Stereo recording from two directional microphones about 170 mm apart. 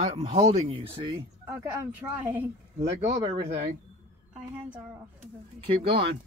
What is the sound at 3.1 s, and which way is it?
Speech, 40° right (ahead or behind).